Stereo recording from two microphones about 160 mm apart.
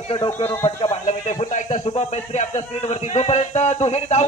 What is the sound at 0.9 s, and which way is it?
Speech, 45° left (ahead or behind).